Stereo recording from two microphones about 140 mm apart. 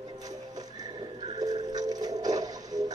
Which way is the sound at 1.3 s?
30° right (ahead or behind).